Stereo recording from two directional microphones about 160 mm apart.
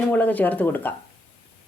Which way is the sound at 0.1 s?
10° left (ahead or behind).